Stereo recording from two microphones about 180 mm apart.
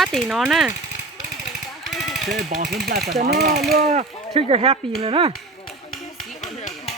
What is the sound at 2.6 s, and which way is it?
Speech, 50° right (ahead or behind).